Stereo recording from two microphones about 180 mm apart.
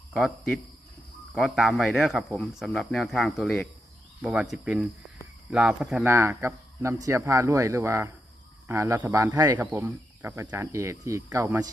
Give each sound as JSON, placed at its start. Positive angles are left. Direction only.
{"t": 1.3, "sound": "speech", "side_deg": -5}